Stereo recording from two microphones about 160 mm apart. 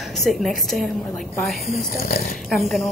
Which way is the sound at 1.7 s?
65° left (ahead or behind).